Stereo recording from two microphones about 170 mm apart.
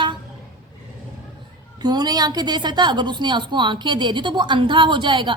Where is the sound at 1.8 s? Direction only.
25° right (ahead or behind).